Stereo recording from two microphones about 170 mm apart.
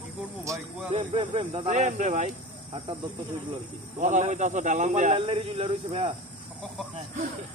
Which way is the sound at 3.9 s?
45° right (ahead or behind).